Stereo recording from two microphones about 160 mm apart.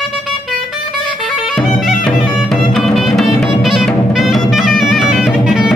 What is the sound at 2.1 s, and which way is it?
Music, centre (ahead or behind).